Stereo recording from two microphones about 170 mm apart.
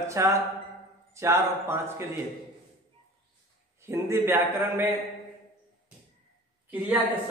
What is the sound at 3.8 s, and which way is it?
A man's voice, 15° right (ahead or behind).